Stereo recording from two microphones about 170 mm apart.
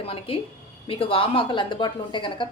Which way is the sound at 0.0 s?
35° left (ahead or behind).